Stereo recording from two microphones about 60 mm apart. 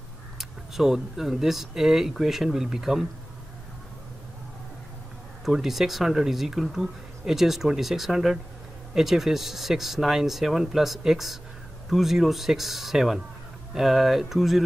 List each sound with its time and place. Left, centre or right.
0.4 s speech: centre
5.4 s speech: centre